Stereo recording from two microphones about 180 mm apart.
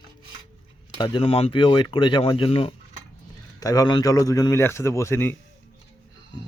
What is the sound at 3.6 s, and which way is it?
Speech, 20° left (ahead or behind).